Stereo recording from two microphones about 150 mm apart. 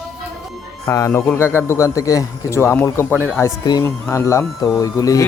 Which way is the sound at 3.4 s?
25° left (ahead or behind).